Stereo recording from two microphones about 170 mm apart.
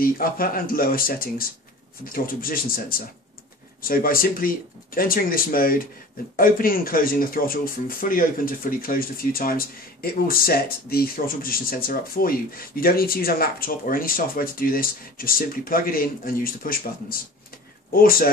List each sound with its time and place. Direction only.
0.0 s speech: 60° left (ahead or behind)